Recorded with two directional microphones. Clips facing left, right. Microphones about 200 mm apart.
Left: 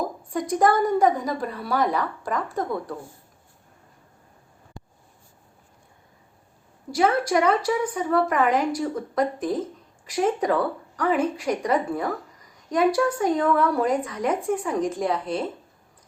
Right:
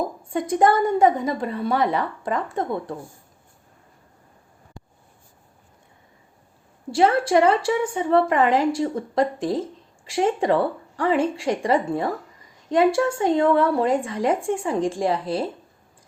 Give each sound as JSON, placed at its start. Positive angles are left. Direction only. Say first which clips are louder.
{"t": 0.3, "sound": "a woman's voice", "louder": "right 2 dB", "side_deg": -25}
{"t": 6.9, "sound": "a woman's voice", "louder": "right 3 dB", "side_deg": -30}